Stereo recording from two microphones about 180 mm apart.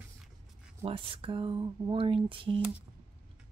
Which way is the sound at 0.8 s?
30° right (ahead or behind).